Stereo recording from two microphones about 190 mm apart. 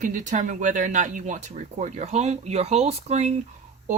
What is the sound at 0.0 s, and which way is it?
Speech, 40° right (ahead or behind).